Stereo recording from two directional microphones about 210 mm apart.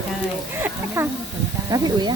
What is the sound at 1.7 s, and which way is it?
Speech, 20° right (ahead or behind).